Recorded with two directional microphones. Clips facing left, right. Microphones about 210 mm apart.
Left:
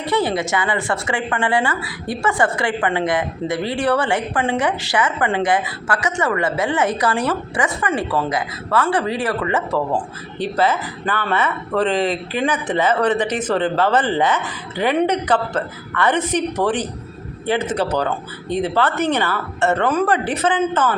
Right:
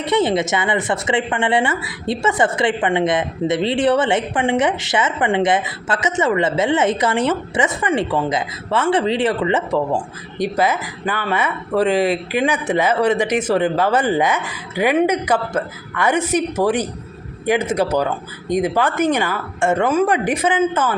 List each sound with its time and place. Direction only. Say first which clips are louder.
0.0 s a woman's voice: right 3 dB; 20° right (ahead or behind)